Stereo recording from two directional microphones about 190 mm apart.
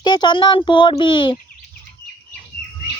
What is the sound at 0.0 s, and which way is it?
Speech, 20° left (ahead or behind).